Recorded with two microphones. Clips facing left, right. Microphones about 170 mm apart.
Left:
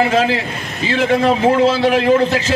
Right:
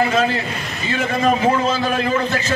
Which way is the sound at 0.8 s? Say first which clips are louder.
Left 4 dB; 90° left.